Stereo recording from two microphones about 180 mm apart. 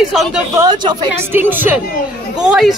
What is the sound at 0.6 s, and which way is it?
Speech, 25° right (ahead or behind).